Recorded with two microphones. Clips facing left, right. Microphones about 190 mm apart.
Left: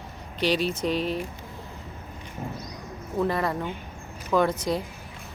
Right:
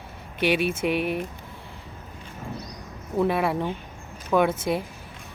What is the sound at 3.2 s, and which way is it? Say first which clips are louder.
Speech: right 3 dB; 10° right (ahead or behind).